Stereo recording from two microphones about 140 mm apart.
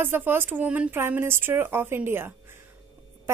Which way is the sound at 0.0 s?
15° right (ahead or behind).